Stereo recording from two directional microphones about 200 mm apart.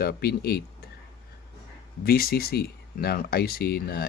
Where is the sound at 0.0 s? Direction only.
50° left (ahead or behind).